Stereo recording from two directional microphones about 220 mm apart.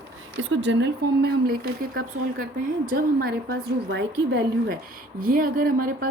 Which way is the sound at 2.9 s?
40° right (ahead or behind).